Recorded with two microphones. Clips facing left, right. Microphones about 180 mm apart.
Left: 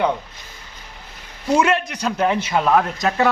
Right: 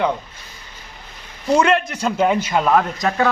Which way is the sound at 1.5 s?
5° left (ahead or behind).